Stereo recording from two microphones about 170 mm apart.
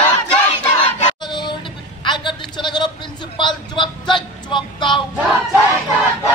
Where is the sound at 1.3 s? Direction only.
25° left (ahead or behind).